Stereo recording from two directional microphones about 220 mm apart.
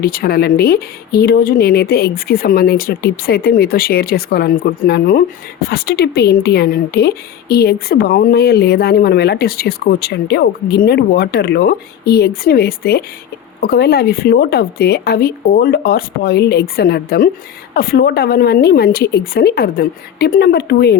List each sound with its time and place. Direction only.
0.0 s speech: 40° left (ahead or behind)